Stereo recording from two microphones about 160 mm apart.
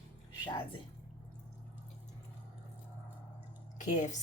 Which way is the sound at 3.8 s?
50° left (ahead or behind).